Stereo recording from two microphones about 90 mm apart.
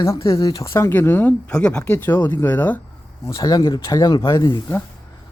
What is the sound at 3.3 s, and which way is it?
Speech, 40° left (ahead or behind).